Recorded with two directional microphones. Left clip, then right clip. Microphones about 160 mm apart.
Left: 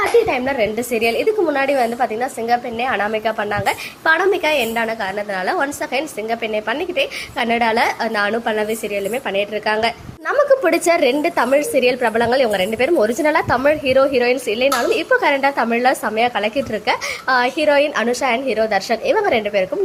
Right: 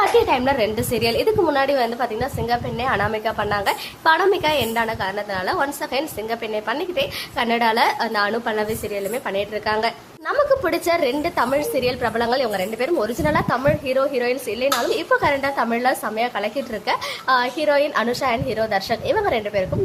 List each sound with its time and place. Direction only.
0.3 s a woman's voice: centre (ahead or behind); by 19.6 s 20° left (ahead or behind)